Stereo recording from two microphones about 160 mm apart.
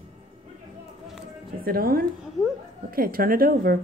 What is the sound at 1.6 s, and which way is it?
A woman's voice, 65° right (ahead or behind).